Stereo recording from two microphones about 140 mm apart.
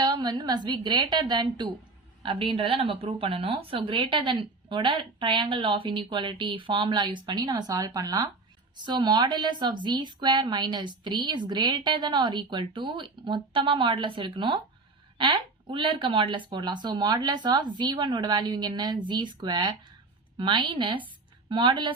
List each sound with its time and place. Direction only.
0.0 s speech: 30° right (ahead or behind)